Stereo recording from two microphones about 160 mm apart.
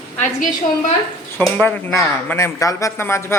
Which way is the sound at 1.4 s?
10° left (ahead or behind).